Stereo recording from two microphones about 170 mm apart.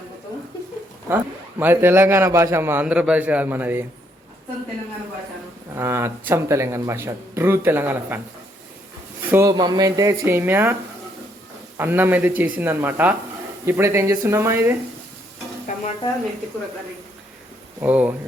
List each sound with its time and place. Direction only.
1.0 s a man's voice: 10° right (ahead or behind)
5.7 s a man's voice: 15° right (ahead or behind)
9.3 s a man's voice: 20° right (ahead or behind)
11.8 s a man's voice: 10° right (ahead or behind)
15.7 s stir: 45° left (ahead or behind)
17.7 s a man's voice: 10° right (ahead or behind)